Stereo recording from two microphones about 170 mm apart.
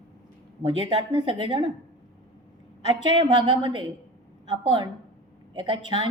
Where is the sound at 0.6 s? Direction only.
30° right (ahead or behind).